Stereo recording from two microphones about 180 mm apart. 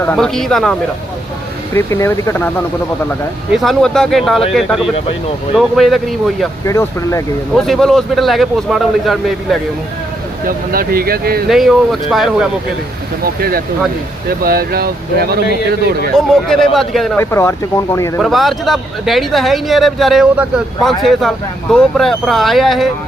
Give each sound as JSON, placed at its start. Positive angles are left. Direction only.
{"t": 0.0, "sound": "speech", "side_deg": 5}
{"t": 1.7, "sound": "speech", "side_deg": 15}
{"t": 3.5, "sound": "speech", "side_deg": 0}
{"t": 6.7, "sound": "speech", "side_deg": 15}
{"t": 7.5, "sound": "speech", "side_deg": 0}
{"t": 10.4, "sound": "speech", "side_deg": -55}
{"t": 11.4, "sound": "speech", "side_deg": 0}
{"t": 13.2, "sound": "speech", "side_deg": -55}
{"t": 16.1, "sound": "speech", "side_deg": 0}
{"t": 17.2, "sound": "speech", "side_deg": 15}
{"t": 18.2, "sound": "speech", "side_deg": 0}